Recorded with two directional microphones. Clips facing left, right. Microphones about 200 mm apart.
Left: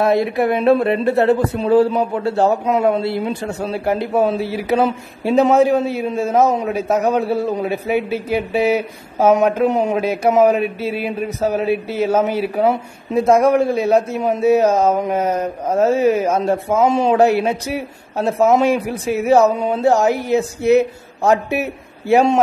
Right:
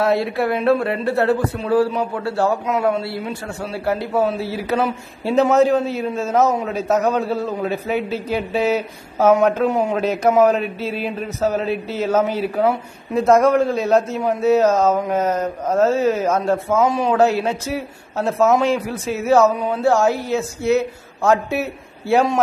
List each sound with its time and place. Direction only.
0.0 s speech: 20° left (ahead or behind)
3.4 s speech: 20° left (ahead or behind)
16.7 s speech: 25° left (ahead or behind)
17.2 s speech: 15° left (ahead or behind)
19.4 s speech: 25° left (ahead or behind)